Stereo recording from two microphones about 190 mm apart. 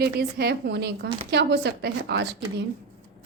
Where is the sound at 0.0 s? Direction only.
55° right (ahead or behind).